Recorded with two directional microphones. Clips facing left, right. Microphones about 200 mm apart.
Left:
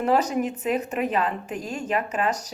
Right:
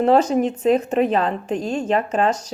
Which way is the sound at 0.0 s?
25° right (ahead or behind).